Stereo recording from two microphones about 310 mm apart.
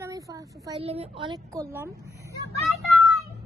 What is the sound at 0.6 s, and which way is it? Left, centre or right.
A woman's voice, centre.